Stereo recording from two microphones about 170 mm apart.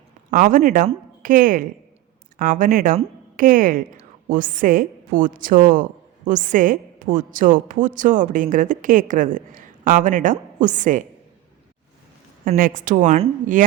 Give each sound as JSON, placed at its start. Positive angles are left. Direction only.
{"t": 0.3, "sound": "a woman's voice", "side_deg": -50}
{"t": 12.5, "sound": "a woman's voice", "side_deg": -55}